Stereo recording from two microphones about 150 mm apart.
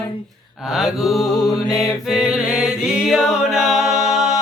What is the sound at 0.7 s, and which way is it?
Mantra, centre (ahead or behind).